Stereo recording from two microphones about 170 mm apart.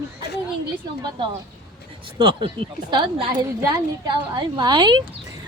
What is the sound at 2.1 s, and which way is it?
A woman's voice, 30° right (ahead or behind).